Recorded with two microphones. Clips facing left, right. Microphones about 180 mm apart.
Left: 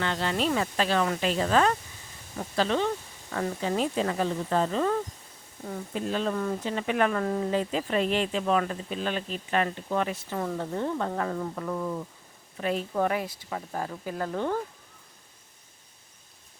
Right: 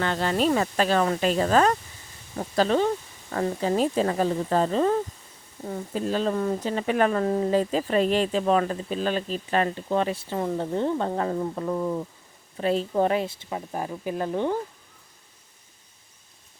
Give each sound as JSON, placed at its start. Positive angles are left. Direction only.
{"t": 0.0, "sound": "speech", "side_deg": -45}